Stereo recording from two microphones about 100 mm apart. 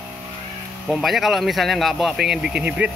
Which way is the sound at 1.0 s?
Centre (ahead or behind).